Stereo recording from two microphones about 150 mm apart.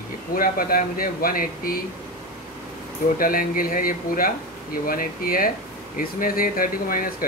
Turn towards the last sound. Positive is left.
turn(degrees=70)  # may be behind; listen again after turning